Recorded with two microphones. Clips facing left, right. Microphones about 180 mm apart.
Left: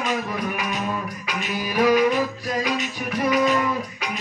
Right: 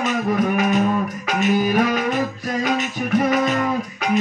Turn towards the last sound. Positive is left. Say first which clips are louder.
# right 3 dB
turn(degrees=-50)  # may be behind; listen again after turning